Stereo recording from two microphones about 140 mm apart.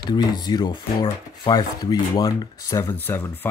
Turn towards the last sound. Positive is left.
turn(degrees=15)  # may be behind; listen again after turning